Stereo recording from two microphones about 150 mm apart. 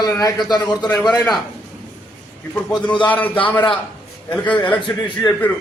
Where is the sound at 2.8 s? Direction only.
35° left (ahead or behind).